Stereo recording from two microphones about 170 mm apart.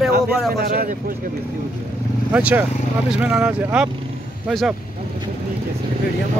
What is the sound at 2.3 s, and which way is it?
Speech, 10° right (ahead or behind).